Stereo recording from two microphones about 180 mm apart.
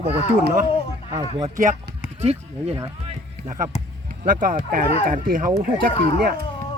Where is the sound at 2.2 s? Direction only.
35° right (ahead or behind).